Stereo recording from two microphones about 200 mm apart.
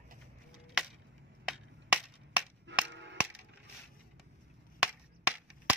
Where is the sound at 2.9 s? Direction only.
65° right (ahead or behind).